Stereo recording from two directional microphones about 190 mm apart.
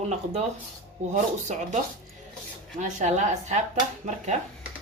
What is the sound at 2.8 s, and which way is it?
Speech, 40° right (ahead or behind).